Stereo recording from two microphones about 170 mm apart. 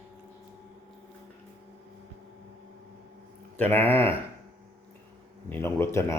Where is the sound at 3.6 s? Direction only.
10° left (ahead or behind).